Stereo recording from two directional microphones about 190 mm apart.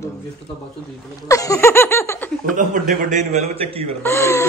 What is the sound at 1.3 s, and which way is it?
Laughter, 15° left (ahead or behind).